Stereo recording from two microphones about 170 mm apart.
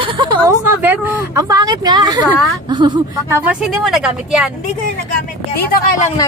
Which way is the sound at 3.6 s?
Centre (ahead or behind).